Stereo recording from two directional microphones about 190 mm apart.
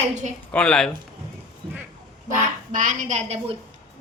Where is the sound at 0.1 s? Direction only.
40° right (ahead or behind).